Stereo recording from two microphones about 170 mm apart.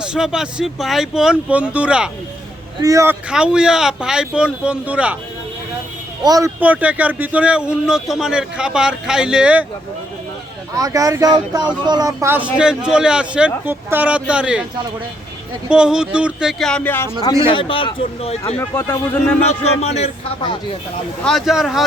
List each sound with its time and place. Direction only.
0.0 s speech: 5° right (ahead or behind)
2.8 s speech: 20° right (ahead or behind)
3.2 s speech: 5° right (ahead or behind)
6.2 s speech: 20° right (ahead or behind)
6.6 s speech: 10° right (ahead or behind)
10.8 s speech: 20° right (ahead or behind)
15.7 s speech: 5° right (ahead or behind); by 17.1 s 10° left (ahead or behind)
17.2 s speech: 30° left (ahead or behind)
18.5 s a man's voice: 10° left (ahead or behind)
19.4 s speech: 40° left (ahead or behind)
21.2 s speech: centre (ahead or behind)